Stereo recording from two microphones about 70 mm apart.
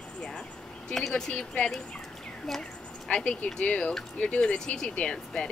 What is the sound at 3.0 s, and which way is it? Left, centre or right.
Speech, centre.